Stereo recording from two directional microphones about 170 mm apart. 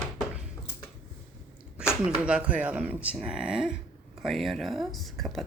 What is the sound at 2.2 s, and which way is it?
A woman's voice, 5° right (ahead or behind).